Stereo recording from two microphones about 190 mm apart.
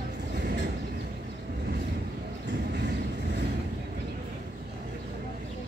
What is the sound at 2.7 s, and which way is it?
Vehicle, 65° right (ahead or behind).